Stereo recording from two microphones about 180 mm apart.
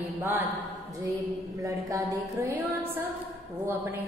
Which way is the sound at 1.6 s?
20° right (ahead or behind).